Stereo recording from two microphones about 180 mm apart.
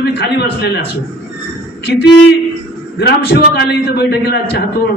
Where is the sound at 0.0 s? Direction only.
65° left (ahead or behind).